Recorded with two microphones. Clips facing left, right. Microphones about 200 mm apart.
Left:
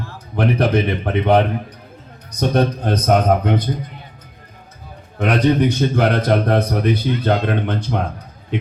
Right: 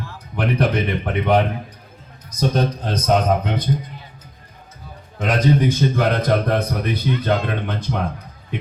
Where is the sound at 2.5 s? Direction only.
60° left (ahead or behind).